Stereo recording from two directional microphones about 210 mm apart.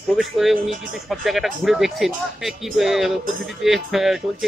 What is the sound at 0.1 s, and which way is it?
Speech, centre (ahead or behind).